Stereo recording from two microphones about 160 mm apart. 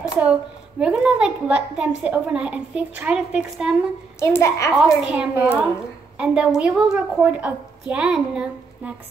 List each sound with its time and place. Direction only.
0.2 s a woman's voice: 5° right (ahead or behind)
4.2 s a child's voice: 15° left (ahead or behind)
4.7 s a woman's voice: 5° right (ahead or behind)